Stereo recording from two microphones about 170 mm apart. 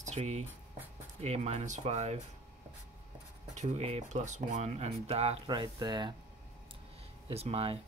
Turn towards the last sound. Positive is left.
turn(degrees=-35)  # may be behind; listen again after turning